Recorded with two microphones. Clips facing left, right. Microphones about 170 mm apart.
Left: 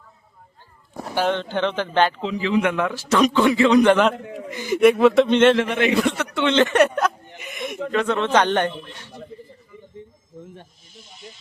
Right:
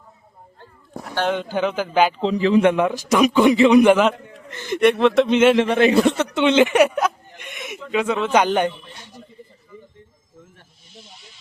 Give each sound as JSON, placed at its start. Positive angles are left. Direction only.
{"t": 1.3, "sound": "a man's voice", "side_deg": -10}
{"t": 2.2, "sound": "a man's voice", "side_deg": -35}
{"t": 2.7, "sound": "a man's voice", "side_deg": -15}
{"t": 4.4, "sound": "a man's voice", "side_deg": 10}
{"t": 5.6, "sound": "a man's voice", "side_deg": -35}
{"t": 6.1, "sound": "a sound", "side_deg": -25}
{"t": 6.4, "sound": "a man's voice", "side_deg": -15}
{"t": 7.3, "sound": "a sound", "side_deg": 0}
{"t": 7.9, "sound": "a man's voice", "side_deg": -10}